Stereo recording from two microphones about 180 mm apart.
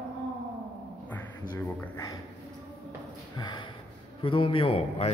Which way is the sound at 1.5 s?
10° left (ahead or behind).